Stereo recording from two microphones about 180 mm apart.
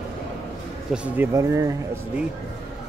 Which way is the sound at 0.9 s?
5° right (ahead or behind).